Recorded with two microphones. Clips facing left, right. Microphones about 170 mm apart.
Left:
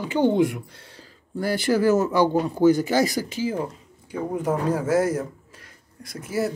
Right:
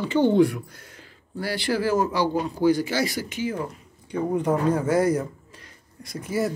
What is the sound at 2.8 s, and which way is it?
Speech, 40° left (ahead or behind).